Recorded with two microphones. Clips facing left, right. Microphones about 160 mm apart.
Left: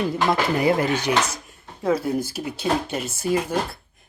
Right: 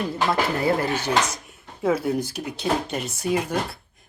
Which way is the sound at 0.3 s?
15° left (ahead or behind).